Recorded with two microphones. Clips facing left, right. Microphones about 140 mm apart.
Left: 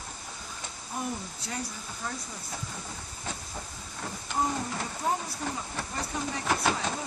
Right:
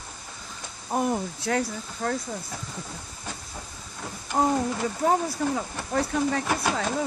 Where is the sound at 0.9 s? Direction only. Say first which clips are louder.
Right 10 dB; 60° right (ahead or behind).